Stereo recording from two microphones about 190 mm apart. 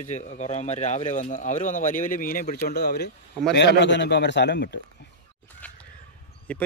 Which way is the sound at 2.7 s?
55° left (ahead or behind).